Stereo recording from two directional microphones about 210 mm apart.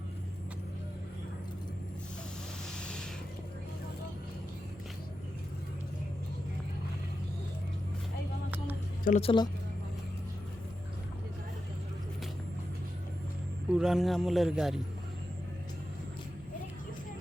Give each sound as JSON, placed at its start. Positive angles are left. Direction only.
{"t": 8.4, "sound": "vehicle", "side_deg": -10}
{"t": 9.0, "sound": "speech", "side_deg": 35}
{"t": 13.7, "sound": "speech", "side_deg": -5}